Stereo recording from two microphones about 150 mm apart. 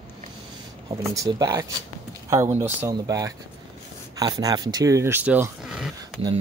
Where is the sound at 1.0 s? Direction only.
25° right (ahead or behind).